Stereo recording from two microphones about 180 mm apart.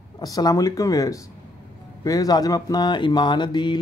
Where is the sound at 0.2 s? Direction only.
20° left (ahead or behind).